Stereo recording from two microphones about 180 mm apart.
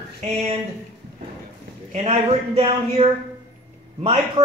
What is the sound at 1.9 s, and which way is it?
A man's voice, 35° right (ahead or behind).